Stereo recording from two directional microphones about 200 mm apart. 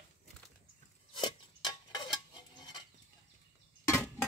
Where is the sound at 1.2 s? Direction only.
25° left (ahead or behind).